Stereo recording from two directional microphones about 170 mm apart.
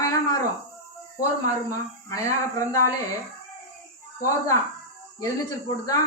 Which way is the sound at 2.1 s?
20° left (ahead or behind).